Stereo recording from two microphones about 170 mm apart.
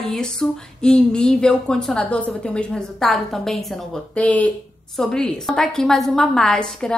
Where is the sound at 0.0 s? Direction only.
5° left (ahead or behind).